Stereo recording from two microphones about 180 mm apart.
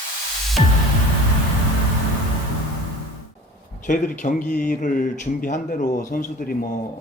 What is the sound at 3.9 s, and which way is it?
Speech, 45° left (ahead or behind).